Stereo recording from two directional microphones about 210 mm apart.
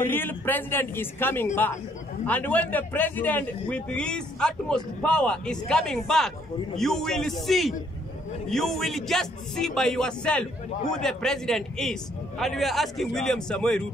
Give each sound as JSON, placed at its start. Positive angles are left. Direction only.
{"t": 0.1, "sound": "a man's voice", "side_deg": 10}